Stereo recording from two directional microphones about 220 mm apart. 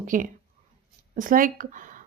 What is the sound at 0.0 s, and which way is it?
Speech, 35° right (ahead or behind).